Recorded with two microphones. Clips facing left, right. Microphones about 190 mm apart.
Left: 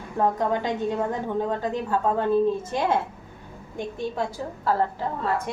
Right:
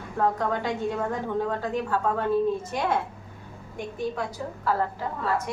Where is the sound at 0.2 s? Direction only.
20° left (ahead or behind).